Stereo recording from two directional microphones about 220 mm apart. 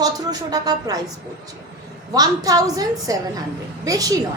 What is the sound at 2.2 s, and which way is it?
A woman's voice, 15° right (ahead or behind).